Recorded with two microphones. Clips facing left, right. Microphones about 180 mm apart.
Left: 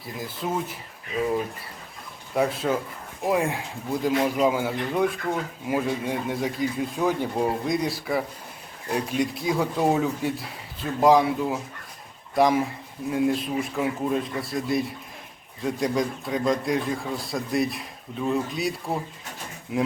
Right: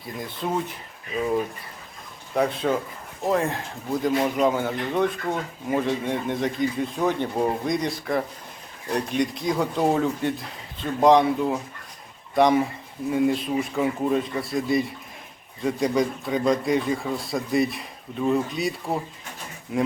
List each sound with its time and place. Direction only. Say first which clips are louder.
0.0 s speech: right 1 dB; 5° left (ahead or behind)
2.3 s speech: right 1 dB; 5° left (ahead or behind)